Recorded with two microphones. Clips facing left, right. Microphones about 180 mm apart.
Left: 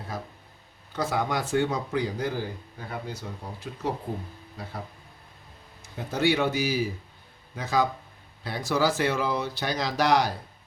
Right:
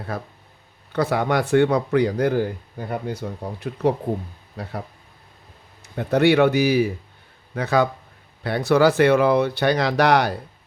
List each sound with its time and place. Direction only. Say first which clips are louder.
0.1 s speech: right 5 dB; 60° right (ahead or behind)
5.8 s speech: right 8 dB; 65° right (ahead or behind)